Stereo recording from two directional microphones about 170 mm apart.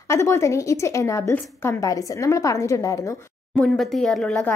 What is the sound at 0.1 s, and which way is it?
A woman's voice, 15° left (ahead or behind).